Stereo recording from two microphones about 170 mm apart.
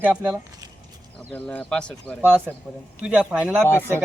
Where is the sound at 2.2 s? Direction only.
10° right (ahead or behind).